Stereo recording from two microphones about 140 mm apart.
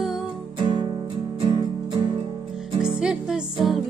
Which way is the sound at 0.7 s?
35° right (ahead or behind).